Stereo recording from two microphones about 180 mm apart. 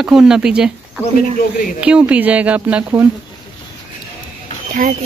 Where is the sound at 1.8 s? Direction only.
5° right (ahead or behind).